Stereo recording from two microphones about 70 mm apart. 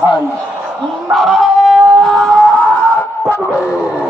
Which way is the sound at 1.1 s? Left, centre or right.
Centre.